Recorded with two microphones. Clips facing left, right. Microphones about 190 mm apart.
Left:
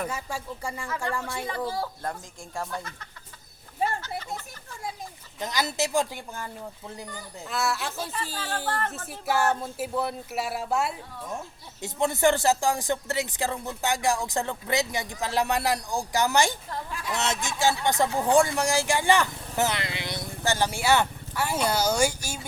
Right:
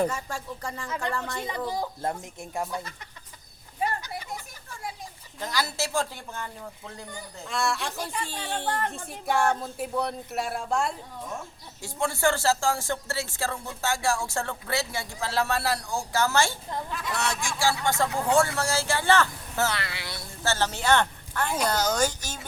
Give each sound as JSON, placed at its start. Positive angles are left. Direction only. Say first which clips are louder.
{"t": 0.1, "sound": "speech", "louder": "even", "side_deg": 10}
{"t": 0.9, "sound": "speech", "louder": "right 1 dB", "side_deg": -20}
{"t": 4.0, "sound": "a sound", "louder": "left 2 dB", "side_deg": -15}
{"t": 5.4, "sound": "speech", "louder": "left 2 dB", "side_deg": 20}
{"t": 7.4, "sound": "speech", "louder": "even", "side_deg": 5}
{"t": 11.8, "sound": "speech", "louder": "left 3 dB", "side_deg": 20}